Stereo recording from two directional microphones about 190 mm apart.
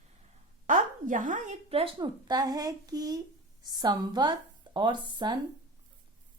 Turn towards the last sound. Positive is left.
turn(degrees=-25)  # may be behind; listen again after turning